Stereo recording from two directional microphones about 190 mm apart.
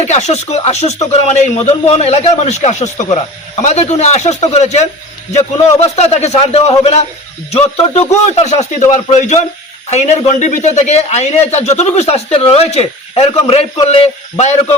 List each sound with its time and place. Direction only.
0.0 s speech: 35° left (ahead or behind)
8.8 s a man's voice: 20° left (ahead or behind)
9.9 s speech: 35° left (ahead or behind)